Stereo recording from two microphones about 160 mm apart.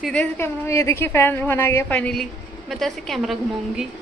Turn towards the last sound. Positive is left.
turn(degrees=0)  # may be behind; listen again after turning